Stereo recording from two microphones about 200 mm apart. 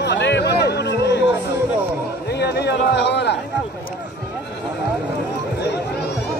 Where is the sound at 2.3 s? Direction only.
55° left (ahead or behind).